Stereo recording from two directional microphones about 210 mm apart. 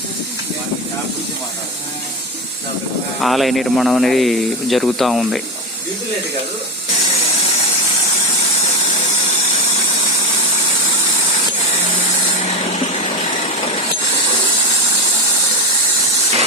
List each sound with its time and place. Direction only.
3.2 s speech: centre (ahead or behind)
12.4 s vehicle: 30° left (ahead or behind)